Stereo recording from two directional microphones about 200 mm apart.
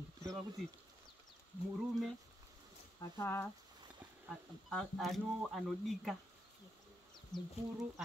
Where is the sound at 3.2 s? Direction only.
15° left (ahead or behind).